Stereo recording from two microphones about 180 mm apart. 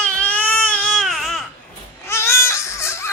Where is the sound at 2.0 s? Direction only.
15° left (ahead or behind).